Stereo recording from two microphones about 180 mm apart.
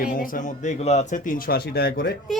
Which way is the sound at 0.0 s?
50° left (ahead or behind).